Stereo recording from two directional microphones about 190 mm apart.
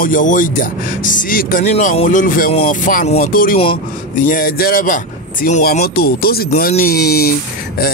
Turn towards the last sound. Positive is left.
turn(degrees=50)  # may be behind; listen again after turning